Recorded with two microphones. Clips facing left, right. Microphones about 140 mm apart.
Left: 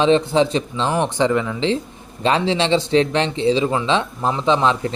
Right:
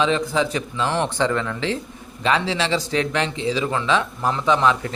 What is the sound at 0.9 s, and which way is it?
Speech, 15° left (ahead or behind).